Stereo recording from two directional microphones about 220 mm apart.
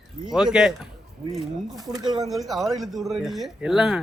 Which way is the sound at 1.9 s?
20° right (ahead or behind).